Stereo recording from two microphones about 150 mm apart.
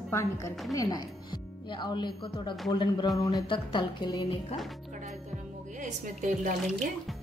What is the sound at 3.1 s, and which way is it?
Music, 30° left (ahead or behind).